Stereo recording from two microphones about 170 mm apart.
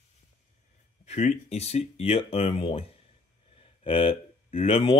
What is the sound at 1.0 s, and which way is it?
Speech, 40° left (ahead or behind).